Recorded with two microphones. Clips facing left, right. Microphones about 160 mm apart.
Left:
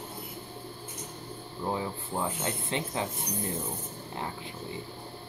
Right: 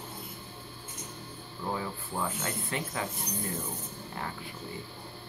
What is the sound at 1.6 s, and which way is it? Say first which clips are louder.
Speech: left 2 dB; 20° left (ahead or behind).